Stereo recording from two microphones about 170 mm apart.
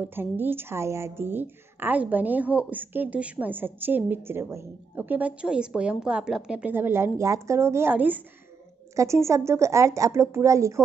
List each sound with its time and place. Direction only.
0.0 s a woman's voice: 10° right (ahead or behind)